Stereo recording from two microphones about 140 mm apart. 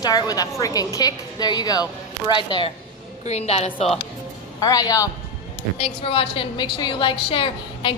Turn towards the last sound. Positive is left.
turn(degrees=40)  # may be behind; listen again after turning